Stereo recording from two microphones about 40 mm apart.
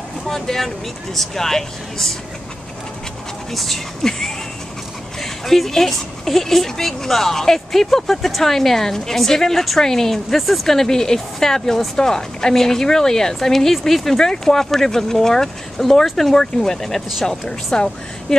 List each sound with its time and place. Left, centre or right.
0.3 s a woman's voice: centre
3.5 s a woman's voice: centre
17.7 s a woman's voice: centre
18.3 s a woman's voice: centre